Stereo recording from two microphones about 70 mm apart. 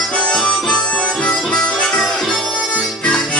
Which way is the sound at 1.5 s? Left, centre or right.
Centre.